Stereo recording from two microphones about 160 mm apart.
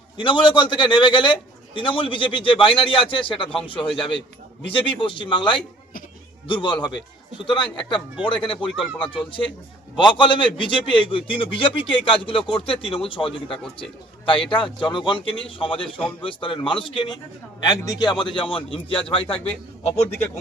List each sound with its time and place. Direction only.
0.2 s a man's voice: 30° left (ahead or behind)